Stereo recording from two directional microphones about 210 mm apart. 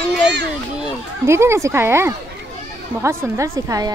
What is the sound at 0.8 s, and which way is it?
A woman's voice, 10° right (ahead or behind).